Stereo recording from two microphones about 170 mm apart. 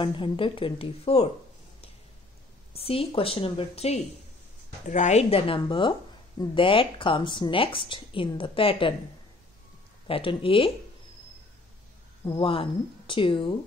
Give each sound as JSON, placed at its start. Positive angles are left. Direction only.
{"t": 0.0, "sound": "speech", "side_deg": 30}
{"t": 2.7, "sound": "speech", "side_deg": 35}
{"t": 10.0, "sound": "speech", "side_deg": 30}
{"t": 12.3, "sound": "speech", "side_deg": 30}